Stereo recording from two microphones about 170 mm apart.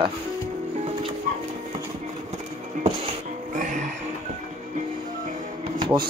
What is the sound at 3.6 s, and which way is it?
Music, 50° right (ahead or behind).